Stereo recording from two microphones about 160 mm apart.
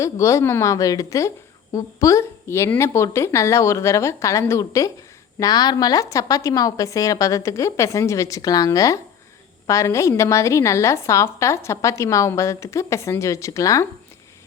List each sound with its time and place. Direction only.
0.0 s a woman's voice: 20° left (ahead or behind)